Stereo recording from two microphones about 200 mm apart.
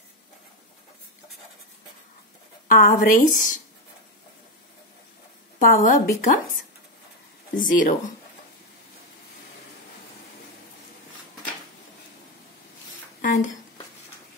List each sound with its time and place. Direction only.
2.7 s a woman's voice: 40° left (ahead or behind)
5.6 s speech: 40° left (ahead or behind)
7.5 s a woman's voice: 40° left (ahead or behind)
13.2 s a sound: 40° left (ahead or behind)